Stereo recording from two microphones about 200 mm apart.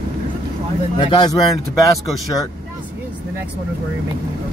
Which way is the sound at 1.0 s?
20° left (ahead or behind).